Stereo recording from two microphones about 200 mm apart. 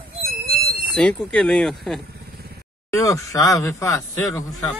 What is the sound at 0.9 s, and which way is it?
Speech, 5° left (ahead or behind).